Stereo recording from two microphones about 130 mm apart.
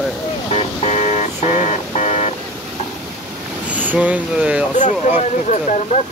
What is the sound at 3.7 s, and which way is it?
Speech, 15° right (ahead or behind).